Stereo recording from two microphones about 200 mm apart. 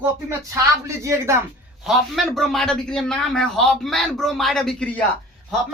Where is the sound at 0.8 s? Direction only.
15° right (ahead or behind).